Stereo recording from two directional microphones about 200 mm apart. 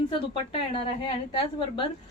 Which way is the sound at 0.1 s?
25° left (ahead or behind).